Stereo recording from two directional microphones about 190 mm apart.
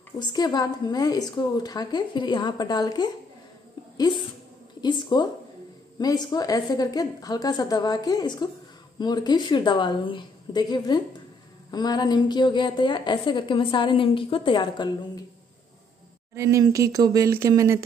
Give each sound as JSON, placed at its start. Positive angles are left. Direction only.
{"t": 0.3, "sound": "a woman's voice", "side_deg": 20}
{"t": 4.8, "sound": "a woman's voice", "side_deg": 25}
{"t": 16.3, "sound": "speech", "side_deg": -15}